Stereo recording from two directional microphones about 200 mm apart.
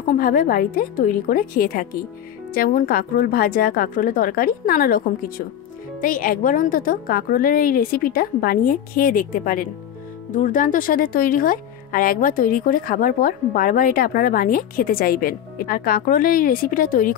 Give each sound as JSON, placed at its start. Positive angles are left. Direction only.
{"t": 0.1, "sound": "speech", "side_deg": 45}